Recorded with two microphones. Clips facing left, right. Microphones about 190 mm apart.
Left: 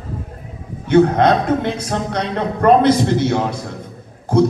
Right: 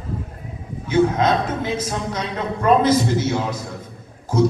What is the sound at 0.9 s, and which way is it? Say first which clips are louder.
Speech: left 5 dB; 60° left (ahead or behind).